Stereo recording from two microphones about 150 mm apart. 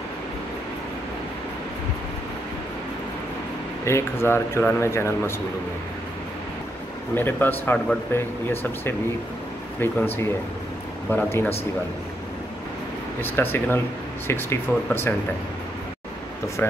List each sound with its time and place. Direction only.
3.8 s speech: 15° left (ahead or behind)
7.2 s speech: 15° left (ahead or behind)
13.2 s speech: 15° left (ahead or behind)